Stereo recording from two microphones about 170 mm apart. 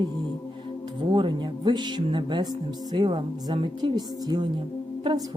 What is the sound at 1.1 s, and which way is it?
Speech, 25° right (ahead or behind).